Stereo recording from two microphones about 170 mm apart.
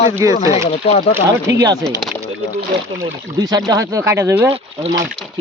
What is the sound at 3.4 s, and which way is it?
Speech, 20° right (ahead or behind).